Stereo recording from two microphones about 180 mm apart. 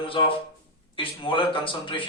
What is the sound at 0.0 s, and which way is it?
Speech, 30° left (ahead or behind).